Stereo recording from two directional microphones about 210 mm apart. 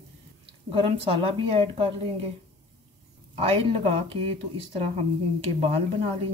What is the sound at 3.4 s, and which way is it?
Speech, 30° right (ahead or behind).